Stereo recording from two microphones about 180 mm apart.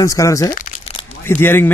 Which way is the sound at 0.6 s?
45° left (ahead or behind).